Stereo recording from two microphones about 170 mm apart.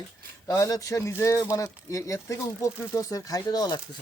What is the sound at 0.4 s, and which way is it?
Speech, 20° left (ahead or behind).